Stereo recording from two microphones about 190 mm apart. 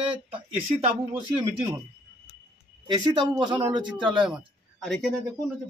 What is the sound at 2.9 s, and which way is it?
A man's voice, 20° right (ahead or behind).